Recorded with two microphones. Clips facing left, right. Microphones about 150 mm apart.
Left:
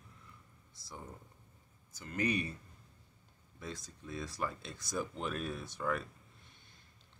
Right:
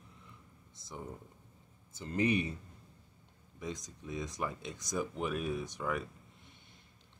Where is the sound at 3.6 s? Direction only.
15° right (ahead or behind).